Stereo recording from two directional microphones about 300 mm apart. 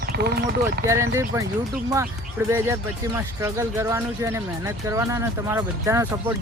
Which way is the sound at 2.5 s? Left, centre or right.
Centre.